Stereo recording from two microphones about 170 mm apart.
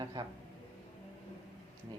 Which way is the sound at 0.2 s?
25° right (ahead or behind).